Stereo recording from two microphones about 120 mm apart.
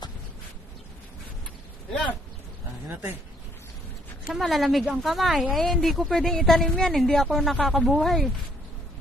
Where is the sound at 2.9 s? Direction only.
15° right (ahead or behind).